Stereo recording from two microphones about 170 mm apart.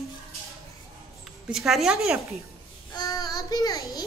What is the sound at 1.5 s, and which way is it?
Speech, centre (ahead or behind).